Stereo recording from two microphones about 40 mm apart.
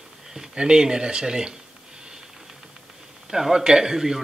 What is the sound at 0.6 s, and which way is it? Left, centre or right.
Speech, centre.